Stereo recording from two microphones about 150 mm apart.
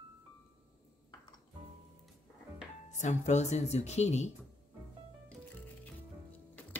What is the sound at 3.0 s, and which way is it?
Speech, 50° left (ahead or behind).